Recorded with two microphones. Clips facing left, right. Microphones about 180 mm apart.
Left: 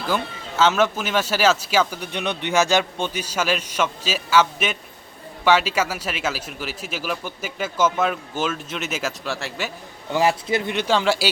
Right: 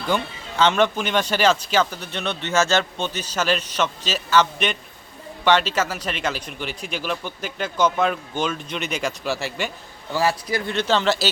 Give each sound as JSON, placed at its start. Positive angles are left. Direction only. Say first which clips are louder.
{"t": 0.1, "sound": "speech", "louder": "right 2 dB", "side_deg": 5}
{"t": 10.1, "sound": "speech", "louder": "left 2 dB", "side_deg": 20}